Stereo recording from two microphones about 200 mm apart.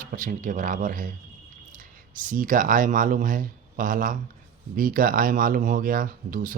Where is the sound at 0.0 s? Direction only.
45° right (ahead or behind).